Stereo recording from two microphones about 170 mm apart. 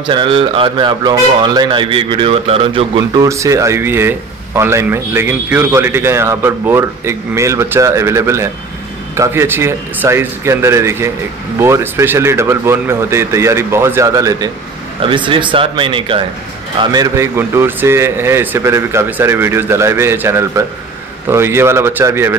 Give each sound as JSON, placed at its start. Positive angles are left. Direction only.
{"t": 0.0, "sound": "speech", "side_deg": -30}
{"t": 3.3, "sound": "speech", "side_deg": -20}
{"t": 15.0, "sound": "speech", "side_deg": -30}
{"t": 16.9, "sound": "speech", "side_deg": -20}